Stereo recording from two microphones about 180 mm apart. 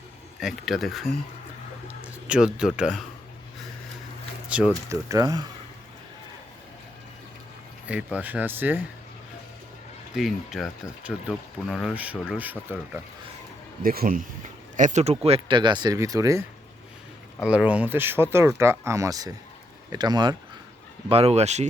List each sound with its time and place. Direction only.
0.3 s speech: centre (ahead or behind)
2.2 s speech: 5° right (ahead or behind)
4.4 s speech: 5° right (ahead or behind)
4.9 s speech: 20° right (ahead or behind)
7.9 s speech: 5° right (ahead or behind)
10.2 s speech: centre (ahead or behind)
13.8 s speech: 55° right (ahead or behind)
14.8 s speech: 40° right (ahead or behind); by 16.4 s 20° right (ahead or behind)
17.4 s speech: 5° right (ahead or behind); by 20.3 s 25° right (ahead or behind)
21.1 s speech: 35° right (ahead or behind)